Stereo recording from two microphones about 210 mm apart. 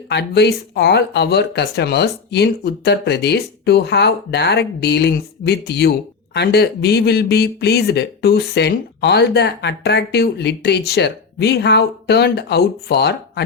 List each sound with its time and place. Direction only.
0.1 s speech: 50° left (ahead or behind)